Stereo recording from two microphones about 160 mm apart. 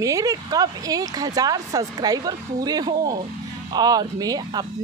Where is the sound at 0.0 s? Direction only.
20° right (ahead or behind).